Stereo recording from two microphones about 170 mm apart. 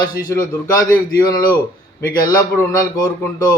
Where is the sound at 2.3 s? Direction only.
20° left (ahead or behind).